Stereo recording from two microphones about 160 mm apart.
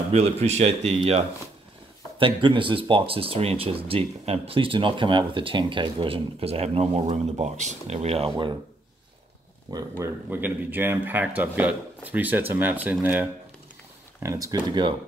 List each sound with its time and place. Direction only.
0.1 s speech: 40° right (ahead or behind)
9.7 s speech: 20° right (ahead or behind)